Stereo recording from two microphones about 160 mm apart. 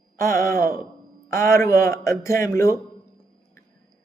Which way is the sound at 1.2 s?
20° left (ahead or behind).